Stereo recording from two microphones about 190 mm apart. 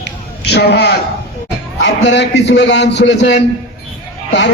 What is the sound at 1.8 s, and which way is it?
A man's voice, 65° left (ahead or behind).